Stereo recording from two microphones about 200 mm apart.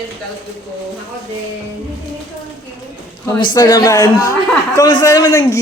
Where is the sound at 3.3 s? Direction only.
20° left (ahead or behind).